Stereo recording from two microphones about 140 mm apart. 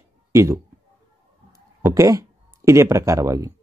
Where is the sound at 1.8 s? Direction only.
20° right (ahead or behind).